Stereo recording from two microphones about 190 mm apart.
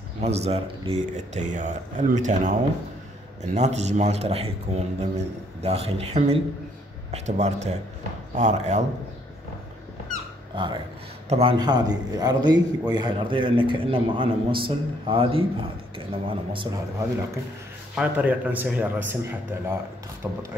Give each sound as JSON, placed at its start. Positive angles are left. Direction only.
{"t": 0.2, "sound": "speech", "side_deg": -35}
{"t": 3.5, "sound": "speech", "side_deg": -35}
{"t": 10.5, "sound": "a man's voice", "side_deg": -25}
{"t": 11.5, "sound": "a man's voice", "side_deg": -20}
{"t": 17.9, "sound": "speech", "side_deg": -10}